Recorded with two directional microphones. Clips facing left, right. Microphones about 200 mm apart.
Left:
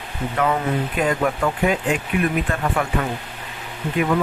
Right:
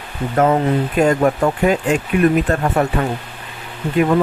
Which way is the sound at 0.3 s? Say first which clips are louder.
Right 6 dB; 45° right (ahead or behind).